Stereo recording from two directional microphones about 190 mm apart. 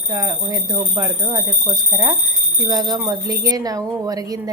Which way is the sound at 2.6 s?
20° right (ahead or behind).